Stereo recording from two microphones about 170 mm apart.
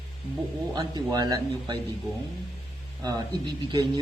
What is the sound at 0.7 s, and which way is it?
Speech, 25° right (ahead or behind).